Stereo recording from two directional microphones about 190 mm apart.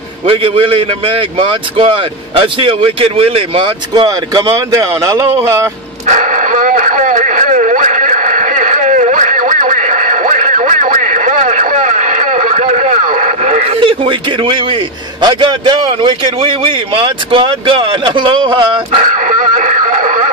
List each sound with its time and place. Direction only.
0.3 s a man's voice: 30° right (ahead or behind)
6.0 s radio: 40° right (ahead or behind)
15.2 s a man's voice: 25° right (ahead or behind)
19.1 s a sound: 40° right (ahead or behind)